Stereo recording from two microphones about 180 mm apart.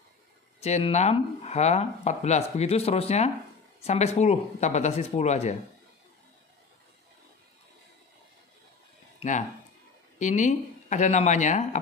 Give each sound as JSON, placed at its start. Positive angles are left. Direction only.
{"t": 0.6, "sound": "speech", "side_deg": 35}
{"t": 10.1, "sound": "speech", "side_deg": 40}